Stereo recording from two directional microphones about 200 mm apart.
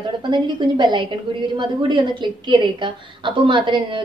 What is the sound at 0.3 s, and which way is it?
A woman's voice, 25° right (ahead or behind).